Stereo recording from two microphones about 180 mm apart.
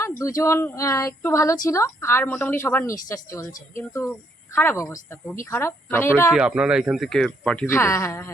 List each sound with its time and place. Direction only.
0.2 s speech: 15° left (ahead or behind)
6.3 s speech: 5° right (ahead or behind); by 8.3 s 15° left (ahead or behind)